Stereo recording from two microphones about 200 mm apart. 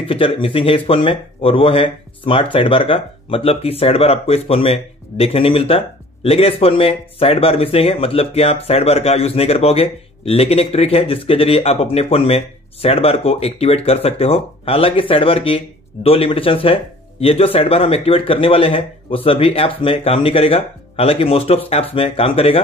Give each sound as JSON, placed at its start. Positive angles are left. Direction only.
{"t": 0.1, "sound": "speech", "side_deg": 25}